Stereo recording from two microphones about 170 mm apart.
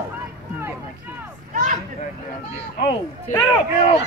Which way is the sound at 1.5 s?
50° right (ahead or behind).